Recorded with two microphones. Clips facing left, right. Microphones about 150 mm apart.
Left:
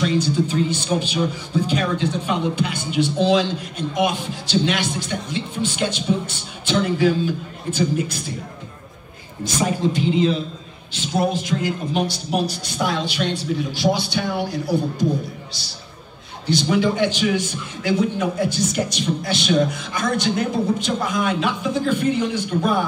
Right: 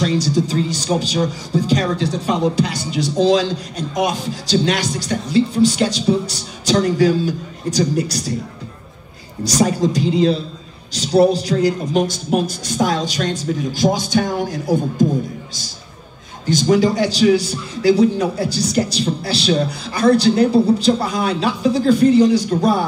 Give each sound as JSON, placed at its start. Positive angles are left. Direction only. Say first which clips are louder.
{"t": 0.0, "sound": "speech", "louder": "right 2 dB", "side_deg": -35}
{"t": 9.4, "sound": "a man's voice", "louder": "right 5 dB", "side_deg": -40}
{"t": 16.4, "sound": "speech", "louder": "right 4 dB", "side_deg": -40}